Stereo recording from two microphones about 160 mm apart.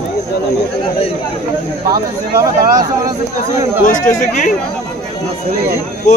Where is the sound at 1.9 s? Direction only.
20° right (ahead or behind).